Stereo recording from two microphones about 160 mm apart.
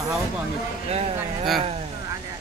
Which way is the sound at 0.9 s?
40° right (ahead or behind).